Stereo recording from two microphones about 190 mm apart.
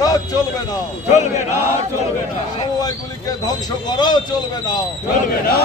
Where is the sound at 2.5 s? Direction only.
20° left (ahead or behind).